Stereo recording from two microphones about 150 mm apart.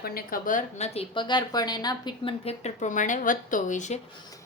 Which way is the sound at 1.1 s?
30° left (ahead or behind).